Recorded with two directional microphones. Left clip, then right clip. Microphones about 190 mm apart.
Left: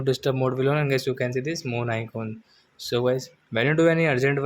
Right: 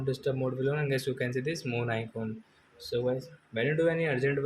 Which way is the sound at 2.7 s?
40° left (ahead or behind).